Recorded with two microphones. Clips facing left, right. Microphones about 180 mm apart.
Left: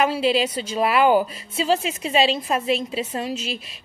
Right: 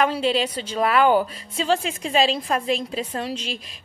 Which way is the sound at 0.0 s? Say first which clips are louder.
Left 1 dB; 10° left (ahead or behind).